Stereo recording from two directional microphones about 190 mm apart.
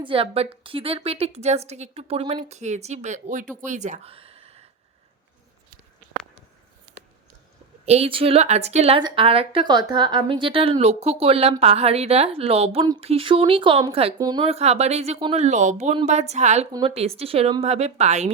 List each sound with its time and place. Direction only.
0.0 s a woman's voice: 30° right (ahead or behind)
7.9 s a woman's voice: 30° right (ahead or behind)